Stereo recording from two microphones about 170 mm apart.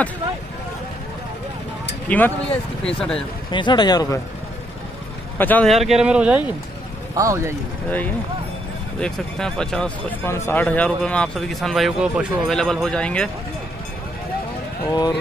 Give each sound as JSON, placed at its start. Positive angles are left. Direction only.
{"t": 2.0, "sound": "speech", "side_deg": 10}
{"t": 3.5, "sound": "speech", "side_deg": 25}
{"t": 5.4, "sound": "speech", "side_deg": 10}
{"t": 7.2, "sound": "speech", "side_deg": -20}
{"t": 9.0, "sound": "speech", "side_deg": 5}
{"t": 14.9, "sound": "speech", "side_deg": 25}